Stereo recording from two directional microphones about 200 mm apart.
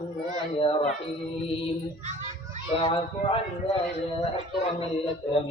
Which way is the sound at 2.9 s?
25° left (ahead or behind).